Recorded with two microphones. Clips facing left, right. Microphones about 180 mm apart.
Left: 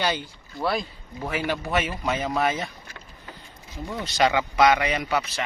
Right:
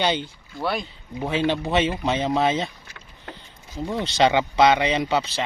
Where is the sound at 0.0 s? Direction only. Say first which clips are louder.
Right 3 dB; 20° right (ahead or behind).